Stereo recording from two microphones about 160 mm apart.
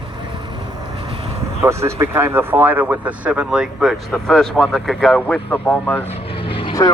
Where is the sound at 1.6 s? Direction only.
15° right (ahead or behind); by 6.1 s 10° left (ahead or behind).